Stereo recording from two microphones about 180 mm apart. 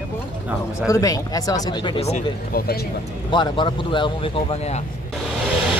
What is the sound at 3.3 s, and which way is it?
A man's voice, 25° left (ahead or behind).